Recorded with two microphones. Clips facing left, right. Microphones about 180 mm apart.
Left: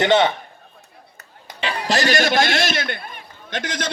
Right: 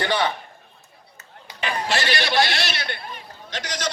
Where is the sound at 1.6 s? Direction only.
40° left (ahead or behind).